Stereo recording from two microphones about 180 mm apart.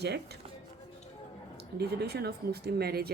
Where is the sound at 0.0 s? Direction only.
65° right (ahead or behind).